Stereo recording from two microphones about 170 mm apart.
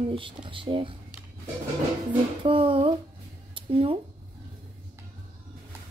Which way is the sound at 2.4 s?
30° right (ahead or behind).